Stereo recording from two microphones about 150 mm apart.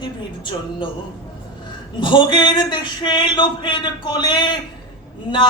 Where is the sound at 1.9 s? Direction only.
30° left (ahead or behind).